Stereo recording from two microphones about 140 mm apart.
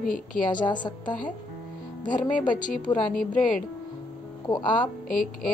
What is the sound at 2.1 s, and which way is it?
Speech, 70° left (ahead or behind).